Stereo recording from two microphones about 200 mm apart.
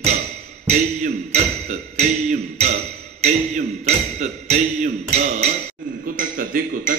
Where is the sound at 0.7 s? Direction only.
35° right (ahead or behind).